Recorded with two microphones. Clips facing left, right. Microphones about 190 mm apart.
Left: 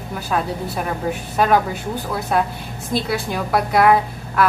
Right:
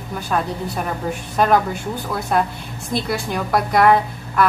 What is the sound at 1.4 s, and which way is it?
A woman's voice, 5° left (ahead or behind).